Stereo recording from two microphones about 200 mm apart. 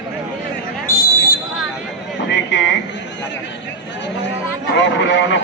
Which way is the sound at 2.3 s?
65° left (ahead or behind).